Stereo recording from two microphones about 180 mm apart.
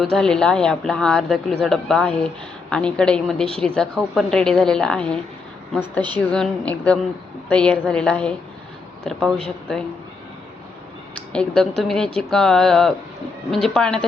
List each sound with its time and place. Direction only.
0.0 s a woman's voice: 5° left (ahead or behind)
6.1 s a woman's voice: 5° left (ahead or behind)
11.3 s a woman's voice: 5° left (ahead or behind)